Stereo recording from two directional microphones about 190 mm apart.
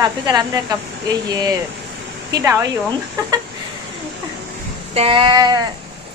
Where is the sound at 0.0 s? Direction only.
20° right (ahead or behind).